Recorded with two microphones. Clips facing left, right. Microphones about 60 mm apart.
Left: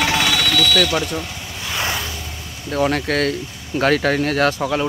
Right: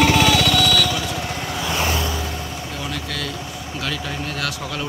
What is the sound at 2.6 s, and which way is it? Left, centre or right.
Speech, left.